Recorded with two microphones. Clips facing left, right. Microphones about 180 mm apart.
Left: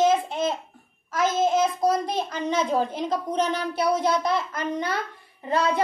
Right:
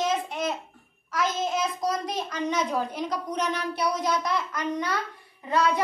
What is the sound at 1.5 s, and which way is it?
Child singing, 50° left (ahead or behind).